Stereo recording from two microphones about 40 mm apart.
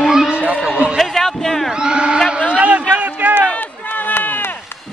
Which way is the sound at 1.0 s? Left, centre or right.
Centre.